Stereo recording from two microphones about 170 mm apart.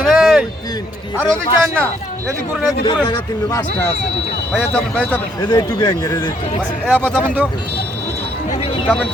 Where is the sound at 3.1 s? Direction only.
20° left (ahead or behind).